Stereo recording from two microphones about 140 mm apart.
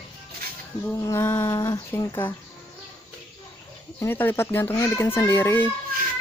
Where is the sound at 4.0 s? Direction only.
15° left (ahead or behind).